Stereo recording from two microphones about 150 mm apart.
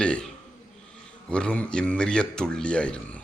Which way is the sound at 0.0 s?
5° left (ahead or behind).